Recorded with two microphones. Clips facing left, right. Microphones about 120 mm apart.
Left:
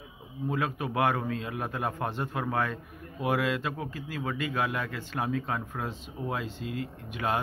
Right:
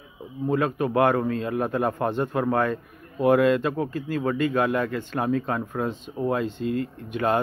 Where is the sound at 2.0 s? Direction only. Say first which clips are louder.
Right 8 dB; 50° right (ahead or behind).